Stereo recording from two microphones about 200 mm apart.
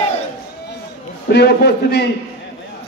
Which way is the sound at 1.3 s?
55° left (ahead or behind).